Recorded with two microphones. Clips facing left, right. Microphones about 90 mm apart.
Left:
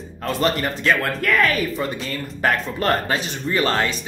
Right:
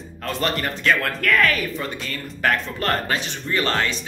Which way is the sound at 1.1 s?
25° left (ahead or behind).